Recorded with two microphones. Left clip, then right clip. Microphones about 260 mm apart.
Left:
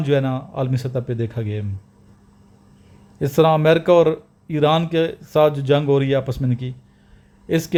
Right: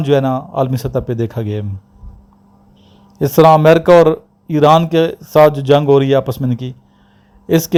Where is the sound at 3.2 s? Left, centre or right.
Right.